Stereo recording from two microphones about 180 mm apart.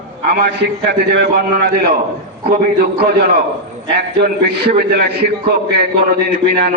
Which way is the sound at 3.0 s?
60° right (ahead or behind).